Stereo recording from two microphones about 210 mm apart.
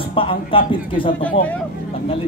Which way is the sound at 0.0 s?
25° left (ahead or behind).